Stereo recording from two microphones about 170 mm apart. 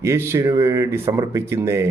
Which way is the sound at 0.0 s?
15° right (ahead or behind).